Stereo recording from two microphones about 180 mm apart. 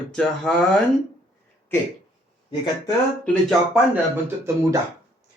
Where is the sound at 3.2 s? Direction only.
5° left (ahead or behind).